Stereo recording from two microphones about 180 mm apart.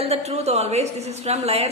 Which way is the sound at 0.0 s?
35° right (ahead or behind).